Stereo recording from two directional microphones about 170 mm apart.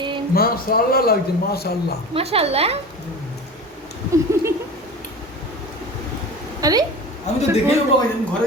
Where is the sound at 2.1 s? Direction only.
35° right (ahead or behind).